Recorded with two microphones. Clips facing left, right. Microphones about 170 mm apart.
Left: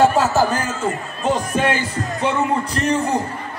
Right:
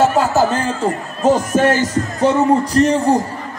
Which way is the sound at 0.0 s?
10° right (ahead or behind).